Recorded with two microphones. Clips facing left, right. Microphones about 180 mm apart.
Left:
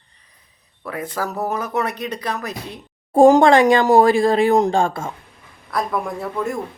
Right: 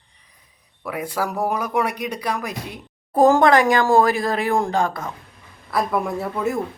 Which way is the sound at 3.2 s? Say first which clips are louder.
Left 3 dB; 20° left (ahead or behind).